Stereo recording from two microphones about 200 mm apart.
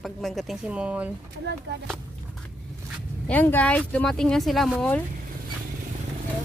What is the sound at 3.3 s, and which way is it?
Speech, 10° left (ahead or behind).